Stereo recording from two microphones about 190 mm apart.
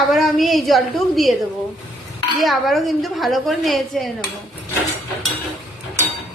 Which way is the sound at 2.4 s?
Centre (ahead or behind).